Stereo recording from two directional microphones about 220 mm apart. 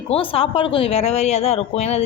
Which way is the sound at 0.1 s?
25° left (ahead or behind).